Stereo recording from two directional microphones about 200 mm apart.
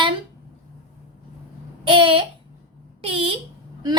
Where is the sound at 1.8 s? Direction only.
25° right (ahead or behind).